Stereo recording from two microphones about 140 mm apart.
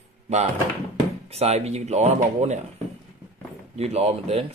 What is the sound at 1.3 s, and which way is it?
Speech, 50° right (ahead or behind).